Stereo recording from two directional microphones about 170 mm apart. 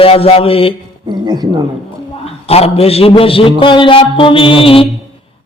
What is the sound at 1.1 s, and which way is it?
Speech, 25° right (ahead or behind).